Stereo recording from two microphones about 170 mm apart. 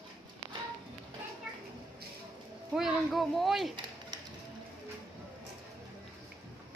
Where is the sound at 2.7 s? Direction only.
Centre (ahead or behind).